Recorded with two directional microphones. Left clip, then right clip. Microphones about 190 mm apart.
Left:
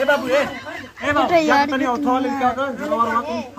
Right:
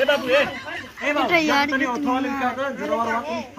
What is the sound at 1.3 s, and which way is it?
Speech, 25° left (ahead or behind).